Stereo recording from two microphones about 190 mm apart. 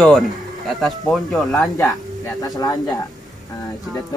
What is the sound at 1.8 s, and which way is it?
Speech, 15° left (ahead or behind).